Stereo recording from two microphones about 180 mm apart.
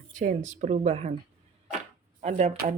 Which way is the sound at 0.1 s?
45° right (ahead or behind).